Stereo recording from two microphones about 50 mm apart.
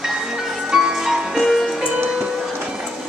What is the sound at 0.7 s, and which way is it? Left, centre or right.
Music, centre.